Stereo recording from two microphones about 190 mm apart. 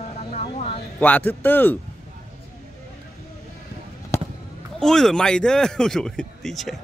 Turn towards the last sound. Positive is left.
turn(degrees=0)  # may be behind; listen again after turning